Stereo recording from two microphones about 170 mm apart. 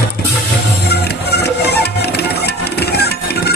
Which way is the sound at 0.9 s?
75° left (ahead or behind).